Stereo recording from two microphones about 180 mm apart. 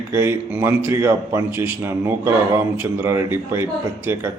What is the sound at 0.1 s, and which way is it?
A man's voice, 10° right (ahead or behind).